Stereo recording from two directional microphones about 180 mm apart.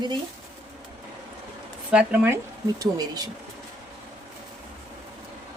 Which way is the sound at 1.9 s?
5° right (ahead or behind).